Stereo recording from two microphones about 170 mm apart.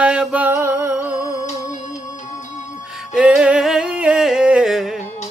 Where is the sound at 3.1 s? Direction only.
5° right (ahead or behind).